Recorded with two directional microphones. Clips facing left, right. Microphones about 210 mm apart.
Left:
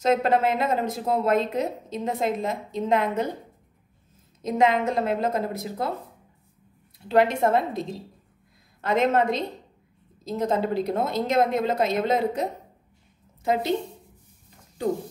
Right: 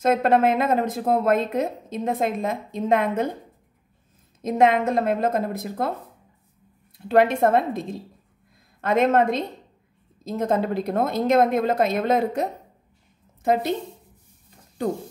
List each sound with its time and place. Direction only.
0.0 s speech: 55° right (ahead or behind)
4.4 s speech: 50° right (ahead or behind)
7.1 s speech: 50° right (ahead or behind)
8.8 s a woman's voice: 55° right (ahead or behind)